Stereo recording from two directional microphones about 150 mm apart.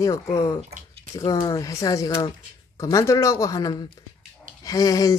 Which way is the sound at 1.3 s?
25° left (ahead or behind).